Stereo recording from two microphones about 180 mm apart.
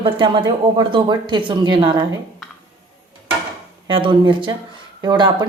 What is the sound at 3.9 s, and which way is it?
A woman's voice, 30° right (ahead or behind).